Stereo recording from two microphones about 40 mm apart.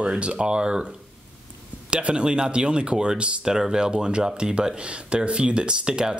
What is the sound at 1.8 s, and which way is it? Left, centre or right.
Speech, right.